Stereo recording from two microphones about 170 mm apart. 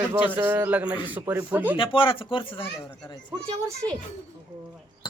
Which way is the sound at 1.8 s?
30° left (ahead or behind).